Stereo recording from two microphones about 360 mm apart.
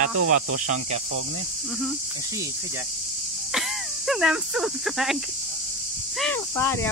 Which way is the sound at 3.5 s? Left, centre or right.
Centre.